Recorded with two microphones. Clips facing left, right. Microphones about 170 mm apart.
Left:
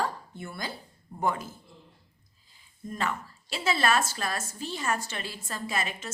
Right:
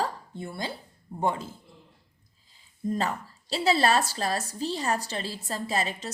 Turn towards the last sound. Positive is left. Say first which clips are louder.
# right 3 dB
turn(degrees=-35)  # may be behind; listen again after turning